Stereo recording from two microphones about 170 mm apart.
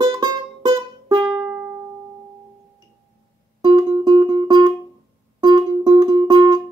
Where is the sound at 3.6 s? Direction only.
25° right (ahead or behind).